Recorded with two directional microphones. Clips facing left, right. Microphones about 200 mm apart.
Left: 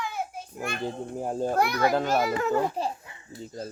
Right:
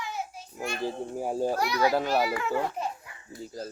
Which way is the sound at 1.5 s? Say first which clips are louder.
Left 4 dB; 55° left (ahead or behind).